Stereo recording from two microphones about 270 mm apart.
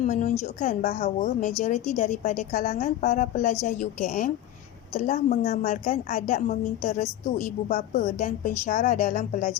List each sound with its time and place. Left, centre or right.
0.0 s a woman's voice: left